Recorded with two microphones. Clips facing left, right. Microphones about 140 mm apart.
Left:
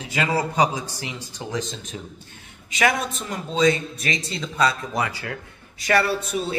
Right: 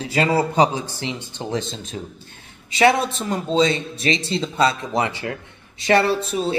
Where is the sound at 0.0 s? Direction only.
30° right (ahead or behind).